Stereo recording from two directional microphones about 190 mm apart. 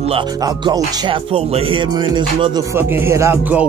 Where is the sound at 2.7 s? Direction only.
10° right (ahead or behind).